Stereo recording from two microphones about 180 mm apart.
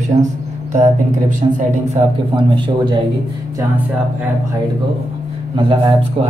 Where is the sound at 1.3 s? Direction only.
40° right (ahead or behind).